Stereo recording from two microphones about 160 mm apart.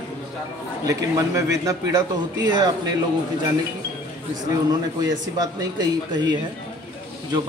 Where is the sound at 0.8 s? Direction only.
20° right (ahead or behind).